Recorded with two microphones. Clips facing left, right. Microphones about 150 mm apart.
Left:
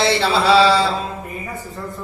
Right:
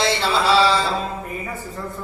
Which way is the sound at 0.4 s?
65° left (ahead or behind).